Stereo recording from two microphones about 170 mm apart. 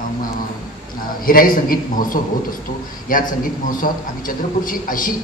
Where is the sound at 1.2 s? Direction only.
55° left (ahead or behind).